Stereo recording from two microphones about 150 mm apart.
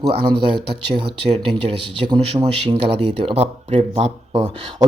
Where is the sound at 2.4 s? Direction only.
30° right (ahead or behind).